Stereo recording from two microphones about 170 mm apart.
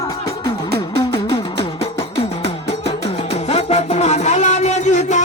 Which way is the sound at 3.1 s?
35° left (ahead or behind).